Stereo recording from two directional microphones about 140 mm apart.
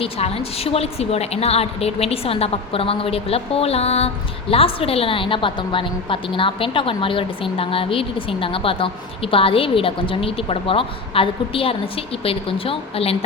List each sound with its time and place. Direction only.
0.0 s a woman's voice: 45° left (ahead or behind)